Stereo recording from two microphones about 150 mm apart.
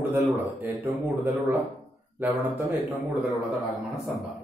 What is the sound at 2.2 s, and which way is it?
Speech, 15° right (ahead or behind).